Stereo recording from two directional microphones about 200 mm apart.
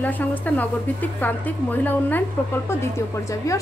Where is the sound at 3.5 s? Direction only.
15° left (ahead or behind).